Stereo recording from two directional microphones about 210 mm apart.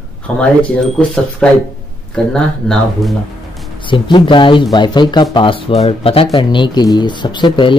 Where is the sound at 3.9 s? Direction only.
25° left (ahead or behind).